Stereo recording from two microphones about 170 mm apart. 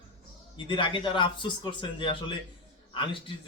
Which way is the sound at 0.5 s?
30° left (ahead or behind).